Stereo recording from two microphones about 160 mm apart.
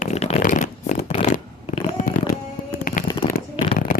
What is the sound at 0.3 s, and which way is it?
Shuffling cards, 55° left (ahead or behind).